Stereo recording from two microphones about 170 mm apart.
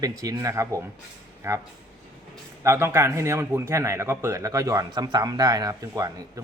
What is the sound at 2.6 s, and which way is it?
Speech, 15° right (ahead or behind).